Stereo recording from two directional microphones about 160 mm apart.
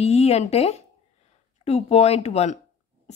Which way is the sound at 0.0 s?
40° left (ahead or behind).